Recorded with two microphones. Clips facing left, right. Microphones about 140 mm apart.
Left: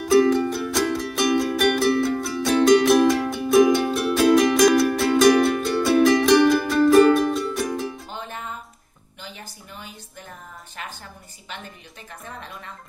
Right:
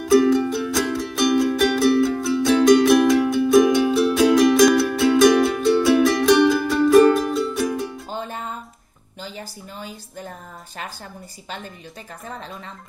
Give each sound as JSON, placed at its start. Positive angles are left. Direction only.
{"t": 0.0, "sound": "music", "side_deg": 0}
{"t": 8.1, "sound": "music", "side_deg": -35}
{"t": 12.3, "sound": "speech", "side_deg": -30}